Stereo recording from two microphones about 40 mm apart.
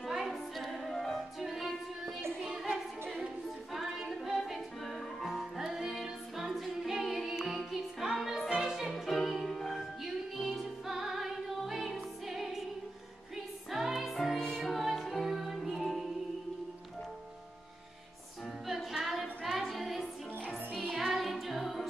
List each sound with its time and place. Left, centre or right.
0.0 s music: centre
2.4 s music: centre
3.7 s female singing: centre
5.2 s music: centre
6.0 s a capella: centre
7.0 s music: centre
8.5 s opera: centre
8.9 s music: centre
13.7 s music: centre
14.4 s music: centre
14.7 s music: centre
18.7 s music: centre